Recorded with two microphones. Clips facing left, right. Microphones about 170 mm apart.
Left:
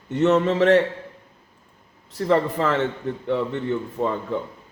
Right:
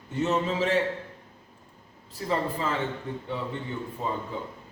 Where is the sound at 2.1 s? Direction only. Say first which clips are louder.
Left 8 dB; 75° left (ahead or behind).